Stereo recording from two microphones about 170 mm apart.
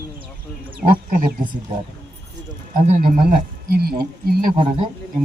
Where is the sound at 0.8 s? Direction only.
55° right (ahead or behind).